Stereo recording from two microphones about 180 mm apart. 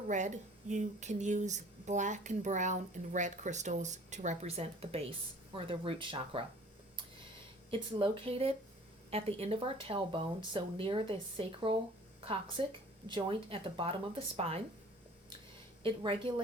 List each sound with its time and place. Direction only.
0.1 s speech: 40° right (ahead or behind)
7.7 s speech: 30° right (ahead or behind)
15.8 s speech: 30° right (ahead or behind)